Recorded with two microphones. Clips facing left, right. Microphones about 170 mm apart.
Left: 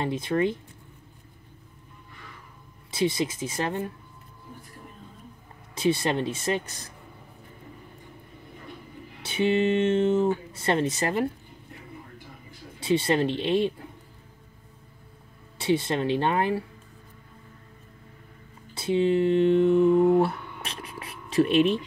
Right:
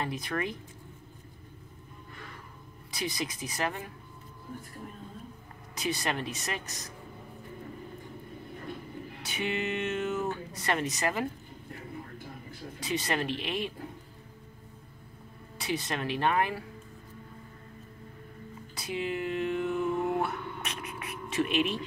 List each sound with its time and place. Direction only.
0.0 s speech: 25° left (ahead or behind)
2.9 s speech: 25° left (ahead or behind)
5.8 s speech: 30° left (ahead or behind)
9.2 s speech: 30° left (ahead or behind)
12.8 s speech: 30° left (ahead or behind)
15.5 s speech: 30° left (ahead or behind)
18.8 s mantra: 30° left (ahead or behind)